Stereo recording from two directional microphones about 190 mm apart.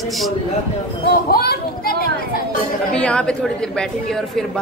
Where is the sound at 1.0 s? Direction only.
55° left (ahead or behind).